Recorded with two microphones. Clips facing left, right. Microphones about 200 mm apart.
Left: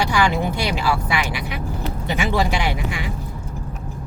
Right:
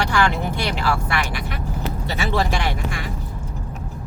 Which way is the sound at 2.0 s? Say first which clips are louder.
Left 2 dB; 15° left (ahead or behind).